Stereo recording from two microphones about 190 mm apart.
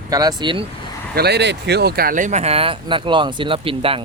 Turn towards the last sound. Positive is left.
turn(degrees=-30)  # may be behind; listen again after turning